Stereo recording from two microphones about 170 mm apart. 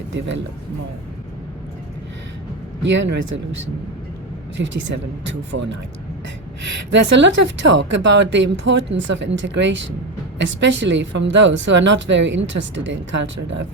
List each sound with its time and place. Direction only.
0.1 s a woman's voice: 90° right
2.8 s a woman's voice: 90° right
4.5 s a woman's voice: 90° right
6.9 s a woman's voice: 90° right